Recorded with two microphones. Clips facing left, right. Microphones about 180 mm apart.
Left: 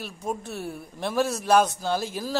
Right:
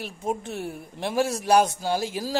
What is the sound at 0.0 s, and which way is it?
A man's voice, 15° right (ahead or behind).